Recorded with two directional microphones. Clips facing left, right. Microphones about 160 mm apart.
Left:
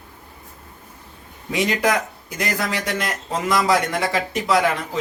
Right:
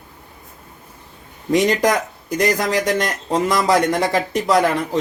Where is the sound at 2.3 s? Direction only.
40° right (ahead or behind).